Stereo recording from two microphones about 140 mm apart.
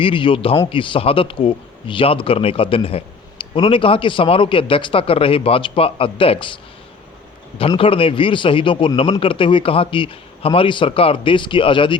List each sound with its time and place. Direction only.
0.0 s speech: 40° left (ahead or behind)
7.8 s speech: 40° left (ahead or behind)